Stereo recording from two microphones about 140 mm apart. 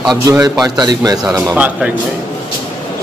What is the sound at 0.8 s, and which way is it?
Speech, 25° right (ahead or behind).